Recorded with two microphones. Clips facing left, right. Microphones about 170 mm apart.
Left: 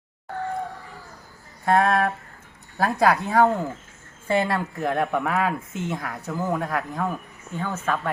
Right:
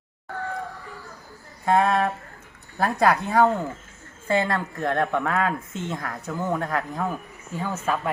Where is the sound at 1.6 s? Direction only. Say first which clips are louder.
Even; centre (ahead or behind).